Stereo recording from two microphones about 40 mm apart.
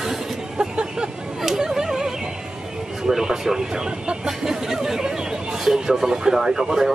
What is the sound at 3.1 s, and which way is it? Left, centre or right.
Speech, centre.